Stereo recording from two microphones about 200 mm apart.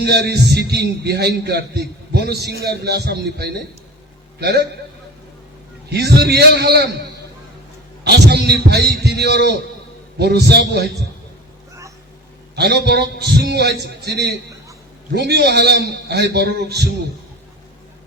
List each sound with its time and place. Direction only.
0.0 s a man's voice: 55° right (ahead or behind)
5.9 s a man's voice: 55° right (ahead or behind)
8.0 s a man's voice: 55° right (ahead or behind)
12.5 s a man's voice: 55° right (ahead or behind)